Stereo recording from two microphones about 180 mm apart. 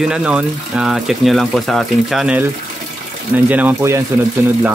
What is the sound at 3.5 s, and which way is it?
Speech, 10° right (ahead or behind).